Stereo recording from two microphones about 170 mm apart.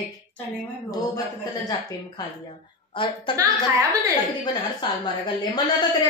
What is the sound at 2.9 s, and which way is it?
Speech, 30° left (ahead or behind).